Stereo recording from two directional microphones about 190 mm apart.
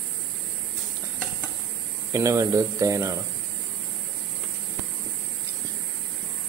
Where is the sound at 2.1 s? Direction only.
15° right (ahead or behind).